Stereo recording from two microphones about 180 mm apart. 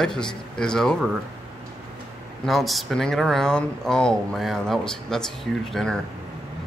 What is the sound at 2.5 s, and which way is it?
Speech, centre (ahead or behind).